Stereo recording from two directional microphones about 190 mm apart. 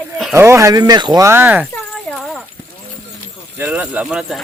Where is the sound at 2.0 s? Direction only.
5° left (ahead or behind).